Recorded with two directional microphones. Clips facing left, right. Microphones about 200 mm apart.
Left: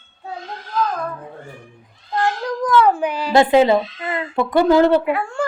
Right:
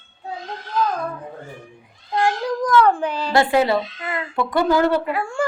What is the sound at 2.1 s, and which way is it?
Cat, 10° right (ahead or behind).